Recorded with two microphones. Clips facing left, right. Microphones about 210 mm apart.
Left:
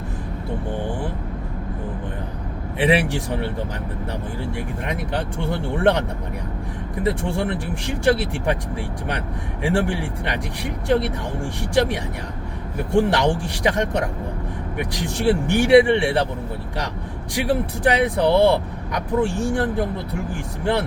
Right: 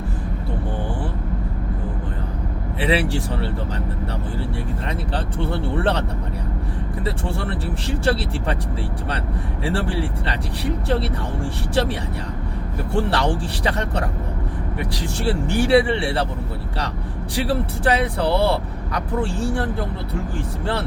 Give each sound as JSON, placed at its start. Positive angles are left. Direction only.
{"t": 2.7, "sound": "speech", "side_deg": 15}
{"t": 7.0, "sound": "speech", "side_deg": 15}
{"t": 9.6, "sound": "speech", "side_deg": 15}
{"t": 17.3, "sound": "speech", "side_deg": 15}